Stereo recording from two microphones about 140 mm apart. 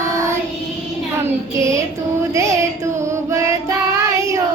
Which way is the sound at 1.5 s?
20° right (ahead or behind).